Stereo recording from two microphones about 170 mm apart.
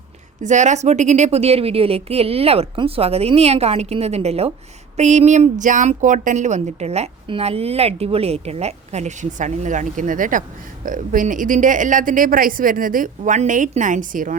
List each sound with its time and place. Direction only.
0.4 s a woman's voice: 45° right (ahead or behind)